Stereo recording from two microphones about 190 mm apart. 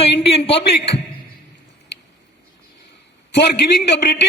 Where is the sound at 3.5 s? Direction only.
60° left (ahead or behind).